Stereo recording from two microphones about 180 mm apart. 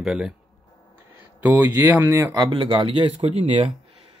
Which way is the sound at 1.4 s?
10° right (ahead or behind).